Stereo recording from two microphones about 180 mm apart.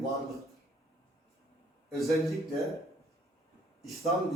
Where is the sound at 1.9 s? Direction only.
Centre (ahead or behind).